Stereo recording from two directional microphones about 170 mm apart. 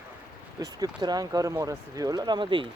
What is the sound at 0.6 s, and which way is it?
Speech, 25° right (ahead or behind).